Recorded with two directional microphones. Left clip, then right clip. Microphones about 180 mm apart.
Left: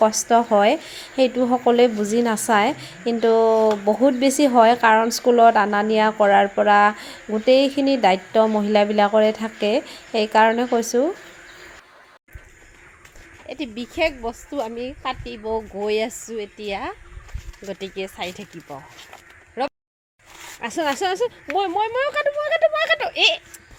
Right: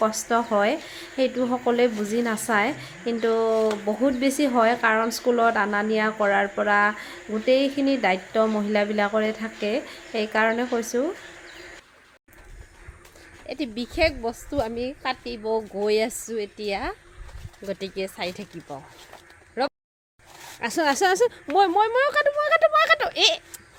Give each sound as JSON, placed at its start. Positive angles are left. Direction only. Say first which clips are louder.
{"t": 0.0, "sound": "speech", "louder": "left 6 dB", "side_deg": 20}
{"t": 13.5, "sound": "a woman's voice", "louder": "even", "side_deg": 5}
{"t": 19.6, "sound": "a sound", "louder": "left 1 dB", "side_deg": 5}
{"t": 20.6, "sound": "speech", "louder": "even", "side_deg": -5}
{"t": 21.0, "sound": "speech", "louder": "right 2 dB", "side_deg": -25}